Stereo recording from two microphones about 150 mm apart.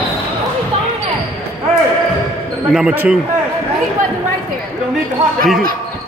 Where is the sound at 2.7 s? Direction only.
10° right (ahead or behind).